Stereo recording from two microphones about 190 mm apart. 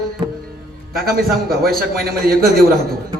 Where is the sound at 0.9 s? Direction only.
50° right (ahead or behind).